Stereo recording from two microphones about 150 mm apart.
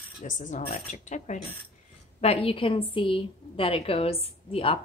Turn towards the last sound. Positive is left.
turn(degrees=40)  # may be behind; listen again after turning